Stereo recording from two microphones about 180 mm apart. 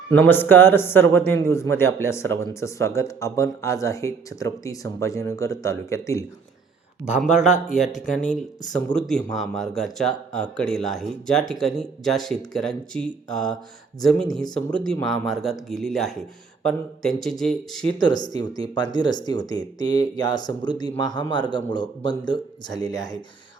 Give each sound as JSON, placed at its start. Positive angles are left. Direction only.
{"t": 0.3, "sound": "a man's voice", "side_deg": 10}
{"t": 7.0, "sound": "speech", "side_deg": -5}
{"t": 18.0, "sound": "speech", "side_deg": 20}